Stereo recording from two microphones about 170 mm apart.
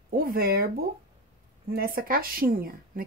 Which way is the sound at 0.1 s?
60° right (ahead or behind).